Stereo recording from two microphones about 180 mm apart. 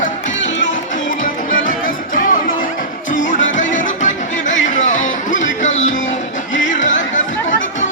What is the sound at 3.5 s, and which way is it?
Music, 45° left (ahead or behind).